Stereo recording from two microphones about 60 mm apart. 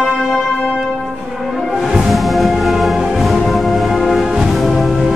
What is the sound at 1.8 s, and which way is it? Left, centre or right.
Music, centre.